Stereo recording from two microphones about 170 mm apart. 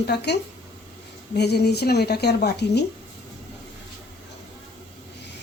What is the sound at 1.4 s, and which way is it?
Speech, 75° left (ahead or behind).